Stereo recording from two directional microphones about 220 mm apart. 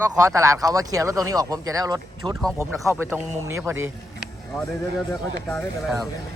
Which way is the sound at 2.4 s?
5° left (ahead or behind).